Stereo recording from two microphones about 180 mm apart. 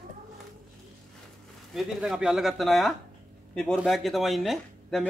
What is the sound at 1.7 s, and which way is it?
Speech, centre (ahead or behind).